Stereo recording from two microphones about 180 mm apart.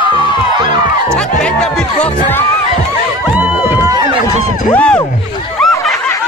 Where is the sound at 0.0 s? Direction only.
30° left (ahead or behind).